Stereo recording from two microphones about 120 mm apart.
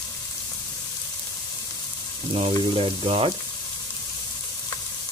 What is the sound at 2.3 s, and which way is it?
Speech, 50° right (ahead or behind).